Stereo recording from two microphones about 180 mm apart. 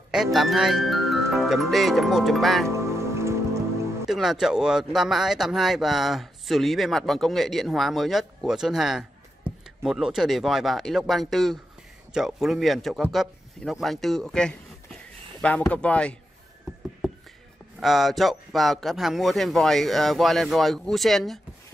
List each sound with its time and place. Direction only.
0.1 s speech: centre (ahead or behind)
2.7 s music: 15° right (ahead or behind)
4.1 s speech: centre (ahead or behind)
17.0 s a sound: centre (ahead or behind)
17.7 s speech: centre (ahead or behind)